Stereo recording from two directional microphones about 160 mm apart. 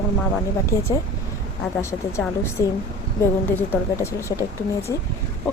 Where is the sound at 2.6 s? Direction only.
20° left (ahead or behind).